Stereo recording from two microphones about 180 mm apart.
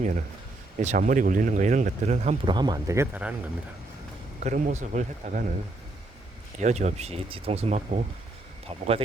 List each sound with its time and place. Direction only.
0.8 s speech: 45° right (ahead or behind); by 3.3 s 10° right (ahead or behind)
4.4 s speech: 40° right (ahead or behind)
6.6 s speech: 40° right (ahead or behind)